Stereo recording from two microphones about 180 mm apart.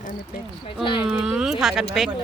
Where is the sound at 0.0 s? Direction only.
45° left (ahead or behind).